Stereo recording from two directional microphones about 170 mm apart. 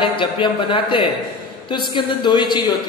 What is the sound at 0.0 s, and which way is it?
A woman's voice, 30° left (ahead or behind).